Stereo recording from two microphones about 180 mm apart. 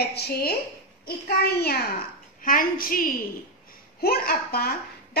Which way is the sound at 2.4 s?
50° left (ahead or behind).